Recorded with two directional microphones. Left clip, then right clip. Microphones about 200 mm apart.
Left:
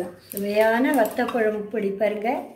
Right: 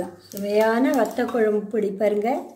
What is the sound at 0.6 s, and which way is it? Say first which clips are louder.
Speech: even; 35° right (ahead or behind).